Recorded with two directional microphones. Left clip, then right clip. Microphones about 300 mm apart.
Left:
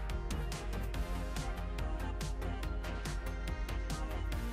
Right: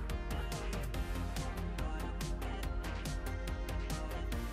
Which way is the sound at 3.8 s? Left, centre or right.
Centre.